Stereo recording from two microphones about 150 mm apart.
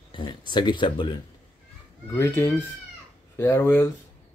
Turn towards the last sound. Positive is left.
turn(degrees=20)  # may be behind; listen again after turning